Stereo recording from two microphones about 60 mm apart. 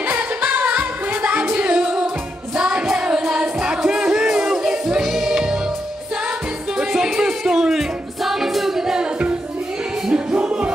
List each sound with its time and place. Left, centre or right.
0.1 s music: right
1.6 s music: centre
6.8 s music: centre
10.0 s music: centre